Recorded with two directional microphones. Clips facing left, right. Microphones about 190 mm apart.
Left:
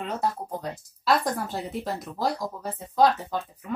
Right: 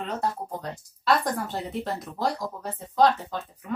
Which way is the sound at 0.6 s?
Centre (ahead or behind).